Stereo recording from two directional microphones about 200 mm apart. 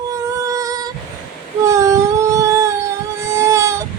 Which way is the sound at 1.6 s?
15° right (ahead or behind).